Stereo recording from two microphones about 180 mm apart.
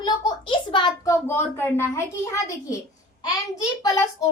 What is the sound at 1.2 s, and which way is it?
A woman's voice, 15° left (ahead or behind).